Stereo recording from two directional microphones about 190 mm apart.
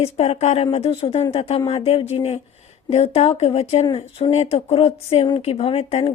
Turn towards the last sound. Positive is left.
turn(degrees=30)  # may be behind; listen again after turning